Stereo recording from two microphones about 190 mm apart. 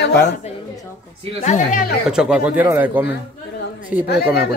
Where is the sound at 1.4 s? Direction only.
40° left (ahead or behind).